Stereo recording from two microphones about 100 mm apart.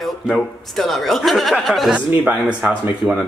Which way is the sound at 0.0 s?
Centre (ahead or behind).